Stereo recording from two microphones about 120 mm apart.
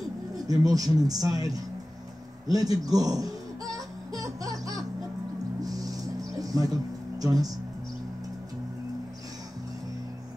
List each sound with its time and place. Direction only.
0.5 s speech: 30° right (ahead or behind)
2.5 s music: 30° right (ahead or behind)